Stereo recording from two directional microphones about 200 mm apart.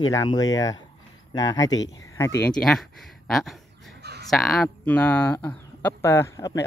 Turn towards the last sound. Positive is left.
turn(degrees=15)  # may be behind; listen again after turning